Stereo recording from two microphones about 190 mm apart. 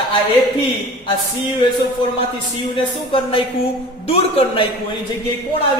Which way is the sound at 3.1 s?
30° left (ahead or behind).